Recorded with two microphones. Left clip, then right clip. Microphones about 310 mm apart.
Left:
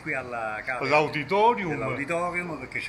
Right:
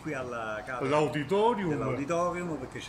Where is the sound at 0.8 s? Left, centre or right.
Centre.